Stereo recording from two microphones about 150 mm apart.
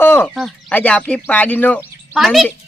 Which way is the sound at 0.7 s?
10° left (ahead or behind).